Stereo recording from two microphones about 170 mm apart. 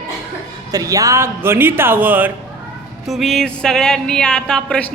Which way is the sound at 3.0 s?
Centre (ahead or behind).